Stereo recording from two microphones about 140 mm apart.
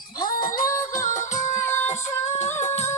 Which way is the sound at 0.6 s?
25° left (ahead or behind).